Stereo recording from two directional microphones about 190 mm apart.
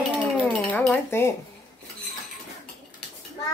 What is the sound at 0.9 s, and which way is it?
Speech, 15° left (ahead or behind).